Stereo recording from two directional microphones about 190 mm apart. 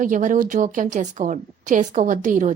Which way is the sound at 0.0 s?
40° right (ahead or behind).